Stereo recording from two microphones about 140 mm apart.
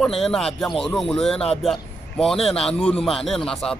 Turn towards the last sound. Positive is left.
turn(degrees=5)  # may be behind; listen again after turning